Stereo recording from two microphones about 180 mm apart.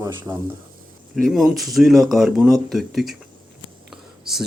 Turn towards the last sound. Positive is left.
turn(degrees=0)  # may be behind; listen again after turning